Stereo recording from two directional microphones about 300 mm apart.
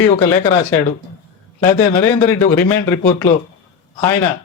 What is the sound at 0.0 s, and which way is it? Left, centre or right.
A man's voice, centre.